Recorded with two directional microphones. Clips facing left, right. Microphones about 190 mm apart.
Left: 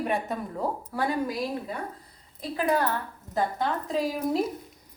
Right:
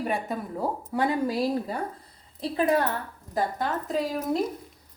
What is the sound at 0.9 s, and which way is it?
Speech, 20° right (ahead or behind).